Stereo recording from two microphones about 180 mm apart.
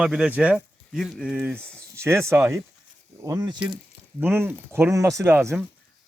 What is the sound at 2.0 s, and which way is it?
Speech, 15° right (ahead or behind).